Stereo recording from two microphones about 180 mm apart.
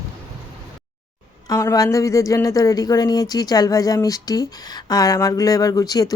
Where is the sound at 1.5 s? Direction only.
20° left (ahead or behind).